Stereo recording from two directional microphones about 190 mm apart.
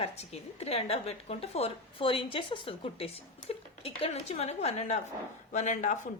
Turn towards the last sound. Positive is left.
turn(degrees=40)  # may be behind; listen again after turning